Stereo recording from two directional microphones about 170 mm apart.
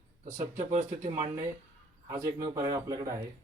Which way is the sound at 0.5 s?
45° right (ahead or behind).